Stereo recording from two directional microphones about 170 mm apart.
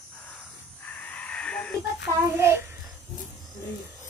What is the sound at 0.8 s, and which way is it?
Crow, 10° left (ahead or behind).